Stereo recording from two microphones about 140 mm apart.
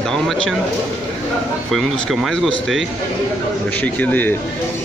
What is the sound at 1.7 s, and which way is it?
Speech, centre (ahead or behind).